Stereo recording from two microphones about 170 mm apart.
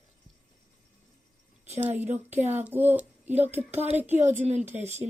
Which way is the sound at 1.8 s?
10° right (ahead or behind).